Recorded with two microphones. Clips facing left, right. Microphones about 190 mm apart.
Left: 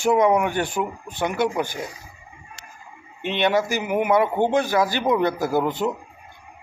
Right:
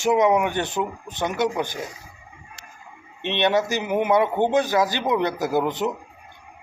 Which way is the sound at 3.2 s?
20° right (ahead or behind).